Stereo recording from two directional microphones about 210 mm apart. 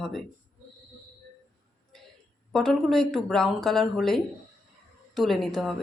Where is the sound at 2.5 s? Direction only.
Centre (ahead or behind).